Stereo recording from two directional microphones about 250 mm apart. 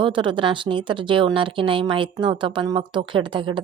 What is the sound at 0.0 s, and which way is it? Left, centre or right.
Speech, centre.